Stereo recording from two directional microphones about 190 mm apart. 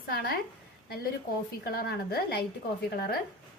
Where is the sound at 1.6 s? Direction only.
55° left (ahead or behind).